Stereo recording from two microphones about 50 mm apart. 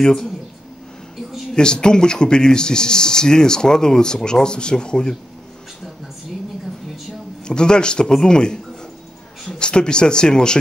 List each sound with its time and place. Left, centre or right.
0.0 s speech: centre
1.5 s speech: centre
7.4 s speech: centre